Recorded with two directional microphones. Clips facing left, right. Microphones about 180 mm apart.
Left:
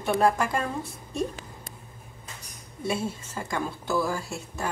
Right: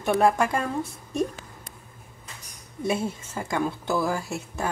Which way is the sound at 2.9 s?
15° right (ahead or behind).